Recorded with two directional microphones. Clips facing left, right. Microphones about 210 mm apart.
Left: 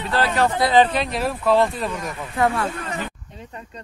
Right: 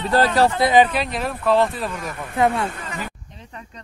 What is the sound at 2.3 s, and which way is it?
Speech, 20° right (ahead or behind).